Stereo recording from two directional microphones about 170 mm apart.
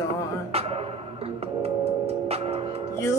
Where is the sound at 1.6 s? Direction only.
35° right (ahead or behind).